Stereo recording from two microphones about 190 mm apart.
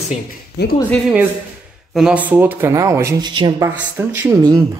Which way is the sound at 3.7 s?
10° right (ahead or behind).